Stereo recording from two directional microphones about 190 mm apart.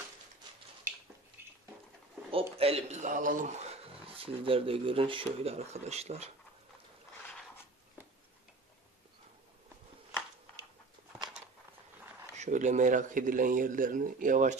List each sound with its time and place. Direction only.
1.4 s a sound: 10° right (ahead or behind)
2.6 s speech: 35° right (ahead or behind)
12.4 s speech: 40° right (ahead or behind)